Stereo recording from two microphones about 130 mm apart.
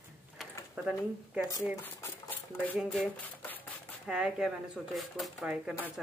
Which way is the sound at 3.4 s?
15° left (ahead or behind).